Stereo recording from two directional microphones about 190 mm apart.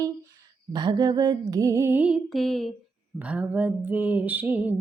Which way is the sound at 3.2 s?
5° right (ahead or behind).